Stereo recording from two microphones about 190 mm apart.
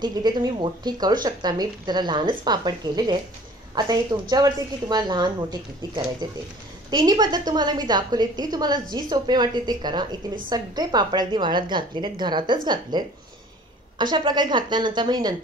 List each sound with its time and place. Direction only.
0.0 s speech: 25° right (ahead or behind)